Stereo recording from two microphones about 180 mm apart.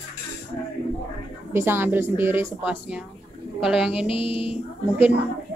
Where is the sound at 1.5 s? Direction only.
15° right (ahead or behind).